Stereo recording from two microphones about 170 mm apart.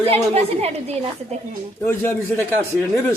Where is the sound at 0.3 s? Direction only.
40° right (ahead or behind).